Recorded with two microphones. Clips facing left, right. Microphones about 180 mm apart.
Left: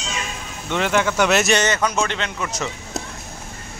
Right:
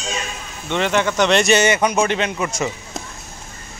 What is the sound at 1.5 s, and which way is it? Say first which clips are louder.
A man's voice: right 4 dB; 10° right (ahead or behind).